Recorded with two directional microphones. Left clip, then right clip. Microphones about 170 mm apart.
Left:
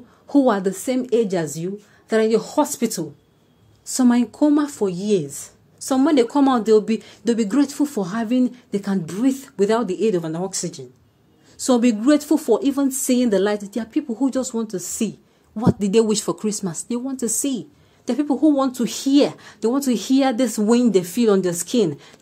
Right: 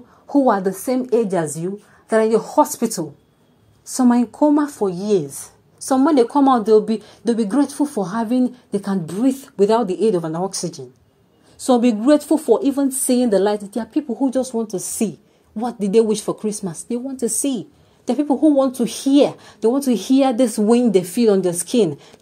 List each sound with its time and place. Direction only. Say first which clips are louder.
0.3 s a woman's voice: right 2 dB; 10° left (ahead or behind)
0.7 s speech: right 2 dB; 25° left (ahead or behind)
0.9 s speech: right 2 dB; centre (ahead or behind)
7.7 s speech: right 1 dB; 30° left (ahead or behind)
8.0 s speech: right 3 dB; centre (ahead or behind)